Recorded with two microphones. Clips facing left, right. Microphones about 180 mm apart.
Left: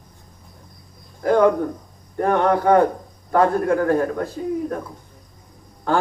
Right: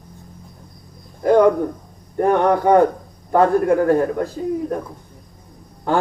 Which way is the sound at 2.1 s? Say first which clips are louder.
Right 2 dB; 15° right (ahead or behind).